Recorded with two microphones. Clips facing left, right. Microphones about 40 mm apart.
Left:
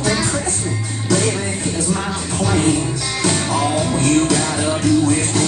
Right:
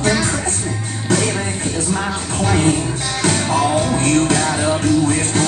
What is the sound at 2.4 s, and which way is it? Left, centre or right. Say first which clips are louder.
Music: right 1 dB; right.